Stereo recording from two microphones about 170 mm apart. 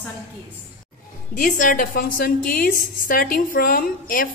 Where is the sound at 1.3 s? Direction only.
55° left (ahead or behind).